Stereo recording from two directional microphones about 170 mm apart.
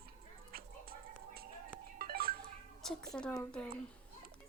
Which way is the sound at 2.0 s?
60° right (ahead or behind).